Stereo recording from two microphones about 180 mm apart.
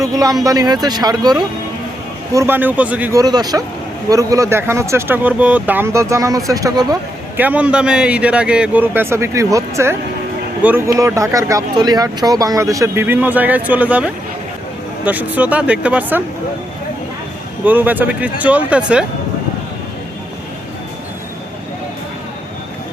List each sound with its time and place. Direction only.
0.0 s speech: 20° right (ahead or behind)
3.2 s speech: 20° right (ahead or behind)
7.3 s speech: 10° right (ahead or behind)
17.7 s speech: 10° right (ahead or behind)